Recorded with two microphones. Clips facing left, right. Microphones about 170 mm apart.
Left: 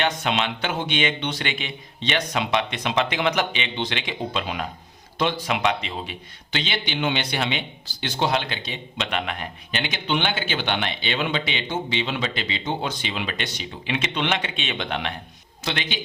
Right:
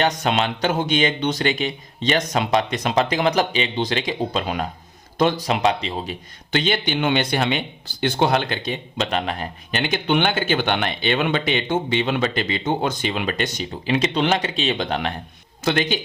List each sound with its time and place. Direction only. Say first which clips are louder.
0.0 s speech: right 4 dB; 40° right (ahead or behind)
6.5 s speech: right 7 dB; 50° right (ahead or behind)